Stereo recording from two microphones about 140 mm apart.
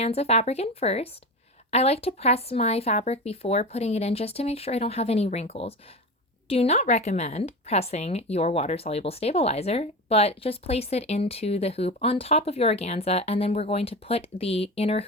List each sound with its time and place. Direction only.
0.0 s a woman's voice: 45° left (ahead or behind)